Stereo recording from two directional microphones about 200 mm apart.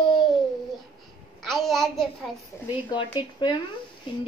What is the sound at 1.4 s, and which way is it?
Babbling, centre (ahead or behind).